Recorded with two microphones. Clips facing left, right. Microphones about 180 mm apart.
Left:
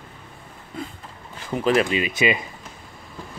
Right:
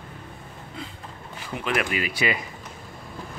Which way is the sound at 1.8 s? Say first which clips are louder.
Left 4 dB; 20° left (ahead or behind).